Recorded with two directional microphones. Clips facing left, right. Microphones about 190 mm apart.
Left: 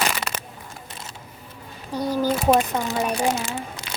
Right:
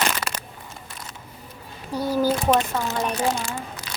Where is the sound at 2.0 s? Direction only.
10° right (ahead or behind).